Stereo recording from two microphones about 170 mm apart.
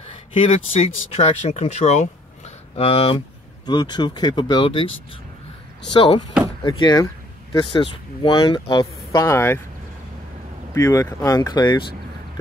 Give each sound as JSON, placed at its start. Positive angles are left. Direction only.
{"t": 0.0, "sound": "speech", "side_deg": 40}
{"t": 3.6, "sound": "speech", "side_deg": 25}
{"t": 5.9, "sound": "speech", "side_deg": 30}
{"t": 10.7, "sound": "speech", "side_deg": 15}